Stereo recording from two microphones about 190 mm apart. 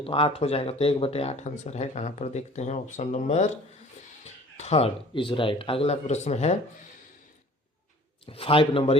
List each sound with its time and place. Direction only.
0.0 s speech: 30° left (ahead or behind)
8.3 s speech: 30° left (ahead or behind)